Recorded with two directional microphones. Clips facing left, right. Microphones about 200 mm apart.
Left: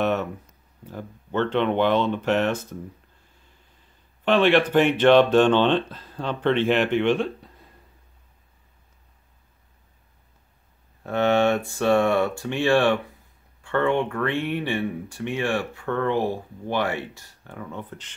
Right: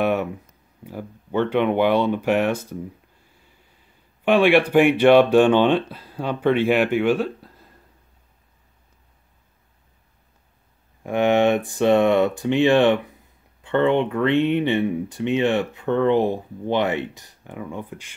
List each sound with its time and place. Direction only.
0.0 s a sound: 10° right (ahead or behind)
0.8 s speech: 10° right (ahead or behind)
4.2 s speech: 10° right (ahead or behind)
11.1 s speech: 15° right (ahead or behind)